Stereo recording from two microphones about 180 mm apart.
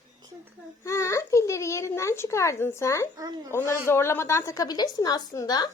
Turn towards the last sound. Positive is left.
turn(degrees=20)  # may be behind; listen again after turning